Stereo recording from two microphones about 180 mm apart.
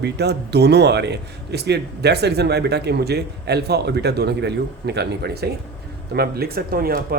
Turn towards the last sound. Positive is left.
turn(degrees=-55)  # may be behind; listen again after turning